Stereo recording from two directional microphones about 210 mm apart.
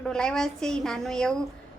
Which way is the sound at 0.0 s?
5° left (ahead or behind).